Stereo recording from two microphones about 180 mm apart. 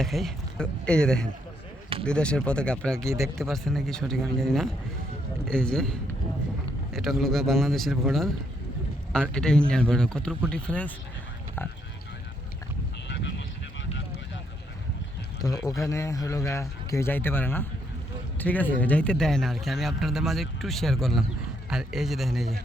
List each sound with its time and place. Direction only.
0.0 s speech: centre (ahead or behind)
13.1 s vehicle: 75° left (ahead or behind)
15.4 s speech: 20° left (ahead or behind); by 22.5 s centre (ahead or behind)